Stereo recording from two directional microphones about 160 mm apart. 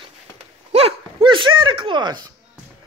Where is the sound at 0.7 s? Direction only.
35° right (ahead or behind).